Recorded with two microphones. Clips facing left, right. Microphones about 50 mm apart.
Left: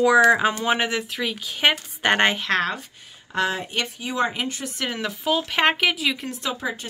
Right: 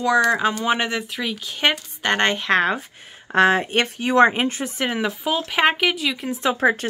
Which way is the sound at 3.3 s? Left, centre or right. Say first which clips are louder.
Right 8 dB; right.